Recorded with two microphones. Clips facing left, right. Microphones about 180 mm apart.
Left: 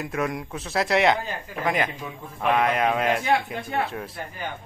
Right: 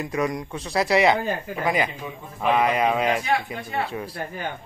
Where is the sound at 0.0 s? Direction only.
Centre (ahead or behind).